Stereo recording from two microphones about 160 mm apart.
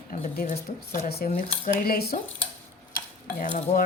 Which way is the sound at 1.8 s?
70° left (ahead or behind).